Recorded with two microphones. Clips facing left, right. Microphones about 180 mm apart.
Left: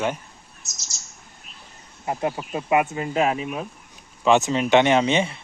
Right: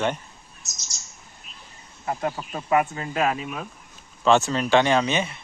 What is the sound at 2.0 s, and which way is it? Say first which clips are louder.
Speech: left 2 dB; 20° left (ahead or behind).